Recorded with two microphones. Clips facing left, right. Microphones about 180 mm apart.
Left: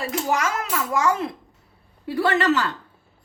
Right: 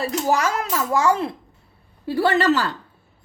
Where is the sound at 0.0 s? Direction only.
35° right (ahead or behind).